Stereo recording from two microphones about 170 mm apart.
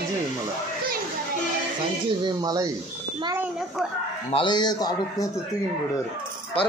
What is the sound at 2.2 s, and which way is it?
Speech, 20° right (ahead or behind).